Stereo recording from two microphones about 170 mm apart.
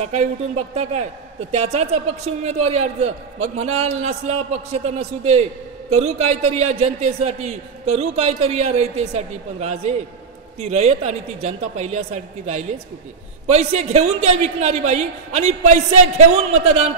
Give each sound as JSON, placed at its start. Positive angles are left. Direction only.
{"t": 0.0, "sound": "a man's voice", "side_deg": -40}
{"t": 1.5, "sound": "a man's voice", "side_deg": -40}